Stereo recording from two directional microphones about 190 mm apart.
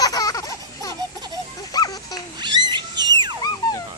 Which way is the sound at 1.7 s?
20° left (ahead or behind).